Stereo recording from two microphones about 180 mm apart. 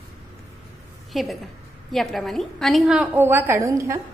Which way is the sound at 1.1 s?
Centre (ahead or behind).